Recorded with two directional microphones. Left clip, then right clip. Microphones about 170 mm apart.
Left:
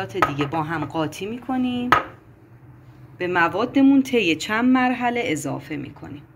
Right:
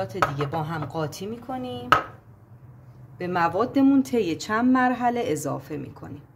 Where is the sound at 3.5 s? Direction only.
35° right (ahead or behind).